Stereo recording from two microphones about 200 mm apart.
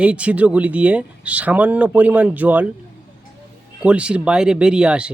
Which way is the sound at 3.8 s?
5° right (ahead or behind).